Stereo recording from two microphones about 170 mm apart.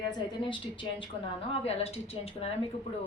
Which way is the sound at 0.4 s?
30° left (ahead or behind).